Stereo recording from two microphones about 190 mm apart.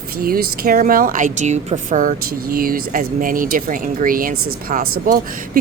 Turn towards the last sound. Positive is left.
turn(degrees=-45)  # may be behind; listen again after turning